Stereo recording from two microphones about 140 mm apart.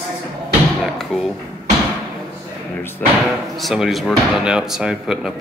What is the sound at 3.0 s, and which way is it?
Speech, 10° left (ahead or behind).